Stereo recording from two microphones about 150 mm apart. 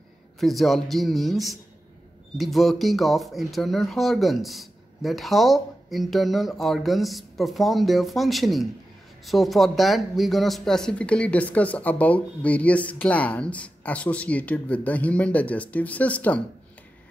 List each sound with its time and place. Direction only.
0.4 s speech: centre (ahead or behind)